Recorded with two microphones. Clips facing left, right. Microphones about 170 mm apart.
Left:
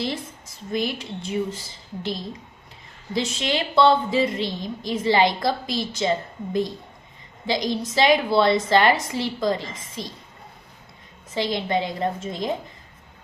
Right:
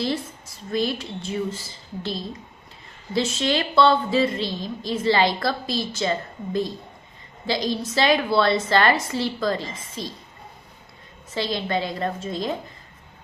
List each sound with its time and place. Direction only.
0.7 s a woman's voice: 20° left (ahead or behind)
11.3 s a woman's voice: 15° left (ahead or behind)